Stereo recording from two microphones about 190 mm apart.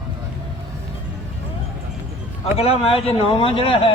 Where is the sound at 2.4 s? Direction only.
30° left (ahead or behind).